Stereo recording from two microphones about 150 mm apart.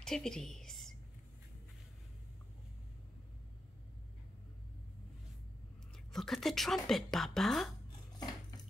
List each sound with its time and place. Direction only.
0.0 s a woman's voice: 5° left (ahead or behind)
6.1 s speech: centre (ahead or behind)